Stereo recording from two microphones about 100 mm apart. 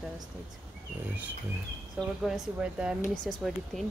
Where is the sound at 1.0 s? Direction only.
15° right (ahead or behind).